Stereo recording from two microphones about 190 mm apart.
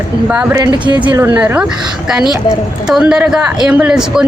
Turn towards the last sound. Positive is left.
turn(degrees=-5)  # may be behind; listen again after turning